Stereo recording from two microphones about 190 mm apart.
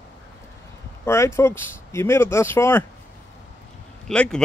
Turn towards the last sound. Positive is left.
turn(degrees=5)  # may be behind; listen again after turning